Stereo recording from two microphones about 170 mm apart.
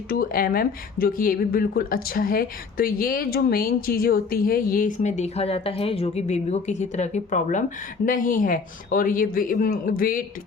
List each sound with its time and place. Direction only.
0.1 s speech: 60° left (ahead or behind)